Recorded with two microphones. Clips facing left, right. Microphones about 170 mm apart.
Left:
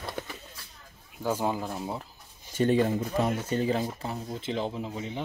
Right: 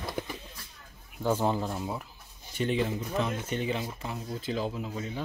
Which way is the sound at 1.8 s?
25° left (ahead or behind).